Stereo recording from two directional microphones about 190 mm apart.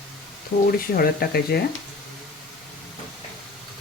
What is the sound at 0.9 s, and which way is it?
Speech, 55° left (ahead or behind).